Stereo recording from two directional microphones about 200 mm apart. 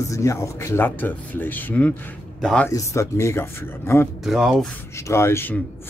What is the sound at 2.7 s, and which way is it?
Speech, 15° left (ahead or behind).